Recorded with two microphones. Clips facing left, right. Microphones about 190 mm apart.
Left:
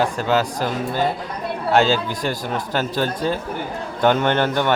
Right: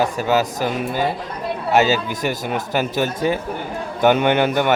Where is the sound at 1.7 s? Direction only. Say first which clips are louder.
Even; 5° right (ahead or behind).